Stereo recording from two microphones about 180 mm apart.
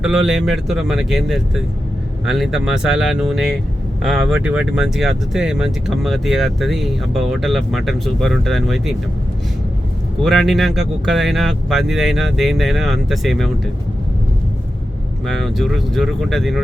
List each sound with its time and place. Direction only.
0.0 s speech: 5° right (ahead or behind)
10.2 s speech: centre (ahead or behind)
15.3 s speech: centre (ahead or behind)